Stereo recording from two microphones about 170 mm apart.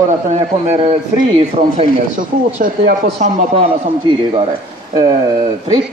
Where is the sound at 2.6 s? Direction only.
55° right (ahead or behind).